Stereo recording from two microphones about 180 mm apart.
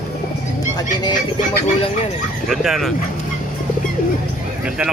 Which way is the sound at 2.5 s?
Centre (ahead or behind).